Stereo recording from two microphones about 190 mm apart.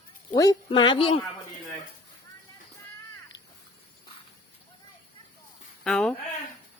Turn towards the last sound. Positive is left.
turn(degrees=0)  # may be behind; listen again after turning